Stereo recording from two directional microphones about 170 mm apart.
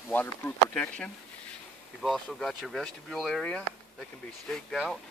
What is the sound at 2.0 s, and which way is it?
Speech, centre (ahead or behind).